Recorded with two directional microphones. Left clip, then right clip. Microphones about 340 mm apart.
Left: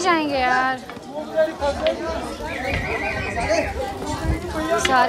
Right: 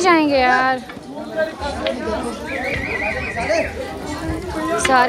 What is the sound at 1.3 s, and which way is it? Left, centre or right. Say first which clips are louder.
Speech: left 2 dB; left.